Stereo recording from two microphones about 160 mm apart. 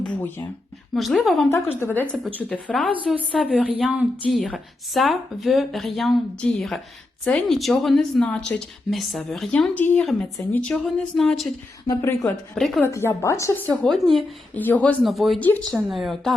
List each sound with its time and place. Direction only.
0.0 s a woman's voice: 10° left (ahead or behind)
1.5 s a woman's voice: 15° left (ahead or behind)
10.0 s a woman's voice: centre (ahead or behind)
11.9 s speech: 20° left (ahead or behind)
12.5 s a woman's voice: centre (ahead or behind)
12.8 s a woman's voice: 15° left (ahead or behind)
13.8 s a woman's voice: centre (ahead or behind)